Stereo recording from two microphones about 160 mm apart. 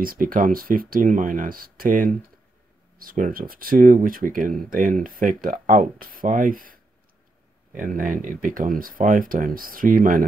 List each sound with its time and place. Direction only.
0.0 s speech: 60° right (ahead or behind)